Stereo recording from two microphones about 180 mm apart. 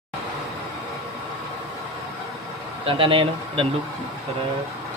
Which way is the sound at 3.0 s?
30° right (ahead or behind).